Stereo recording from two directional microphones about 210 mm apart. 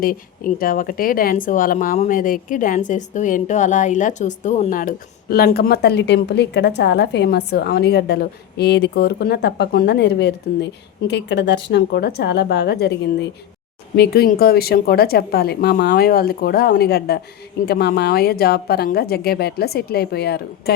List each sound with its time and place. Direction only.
0.6 s speech: 40° left (ahead or behind)